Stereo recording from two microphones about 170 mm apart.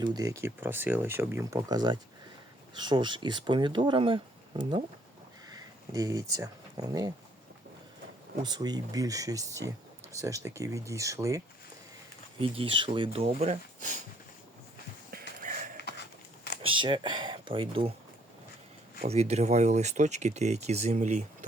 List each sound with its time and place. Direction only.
0.0 s speech: 20° right (ahead or behind)
5.5 s speech: 20° right (ahead or behind)
8.4 s speech: 25° right (ahead or behind)
12.4 s speech: 30° right (ahead or behind)
15.4 s a sound: 50° right (ahead or behind)
15.8 s a sound: 75° left (ahead or behind)
16.6 s speech: 30° right (ahead or behind)
19.0 s speech: 40° right (ahead or behind)